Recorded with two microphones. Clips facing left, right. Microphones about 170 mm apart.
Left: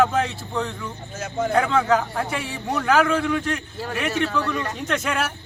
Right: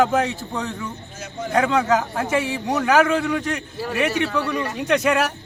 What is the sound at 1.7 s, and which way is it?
A man's voice, 20° right (ahead or behind).